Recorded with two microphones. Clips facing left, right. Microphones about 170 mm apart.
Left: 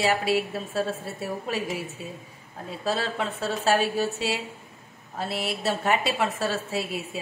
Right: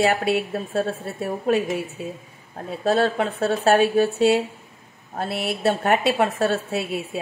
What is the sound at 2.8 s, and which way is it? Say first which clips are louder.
A woman's voice: right 8 dB; 55° right (ahead or behind).